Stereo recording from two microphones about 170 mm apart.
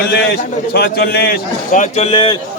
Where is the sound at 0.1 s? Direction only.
70° left (ahead or behind).